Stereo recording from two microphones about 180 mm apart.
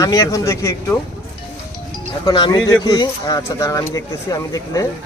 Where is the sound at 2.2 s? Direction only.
25° left (ahead or behind).